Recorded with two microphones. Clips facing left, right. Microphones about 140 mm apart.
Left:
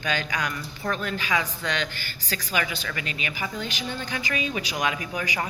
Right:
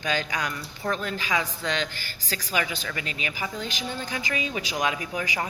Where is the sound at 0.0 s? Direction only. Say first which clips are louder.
Even; 30° right (ahead or behind).